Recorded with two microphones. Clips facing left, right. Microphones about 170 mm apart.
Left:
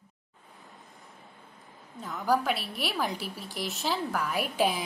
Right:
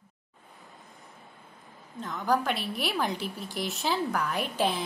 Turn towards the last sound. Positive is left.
turn(degrees=10)  # may be behind; listen again after turning